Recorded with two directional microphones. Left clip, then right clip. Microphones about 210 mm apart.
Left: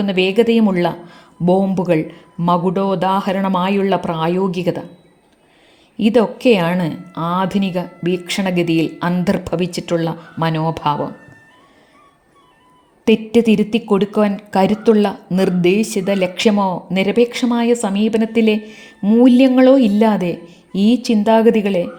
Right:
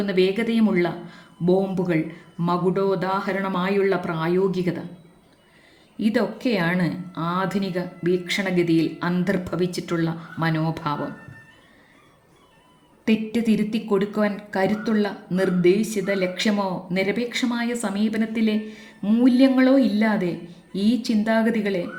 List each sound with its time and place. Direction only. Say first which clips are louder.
0.0 s a woman's voice: left 7 dB; 30° left (ahead or behind)
6.0 s a woman's voice: left 9 dB; 35° left (ahead or behind)
13.1 s a woman's voice: left 10 dB; 35° left (ahead or behind)
18.7 s music: left 5 dB; 35° left (ahead or behind)
19.0 s a woman's voice: left 7 dB; 25° left (ahead or behind)